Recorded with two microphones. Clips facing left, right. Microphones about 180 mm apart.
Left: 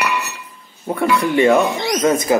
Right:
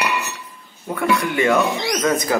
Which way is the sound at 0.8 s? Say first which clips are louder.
Left 3 dB; 30° left (ahead or behind).